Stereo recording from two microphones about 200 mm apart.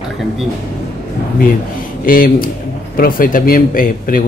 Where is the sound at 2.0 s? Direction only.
45° left (ahead or behind).